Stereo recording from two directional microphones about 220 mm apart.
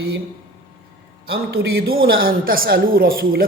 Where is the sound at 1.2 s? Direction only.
45° right (ahead or behind).